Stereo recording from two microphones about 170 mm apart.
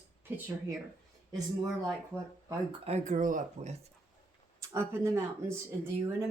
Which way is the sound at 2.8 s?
40° right (ahead or behind).